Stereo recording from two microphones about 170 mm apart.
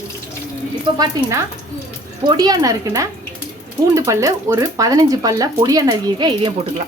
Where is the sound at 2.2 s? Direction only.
25° right (ahead or behind).